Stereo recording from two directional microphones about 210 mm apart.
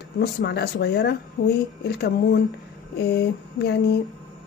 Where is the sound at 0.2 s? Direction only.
50° left (ahead or behind).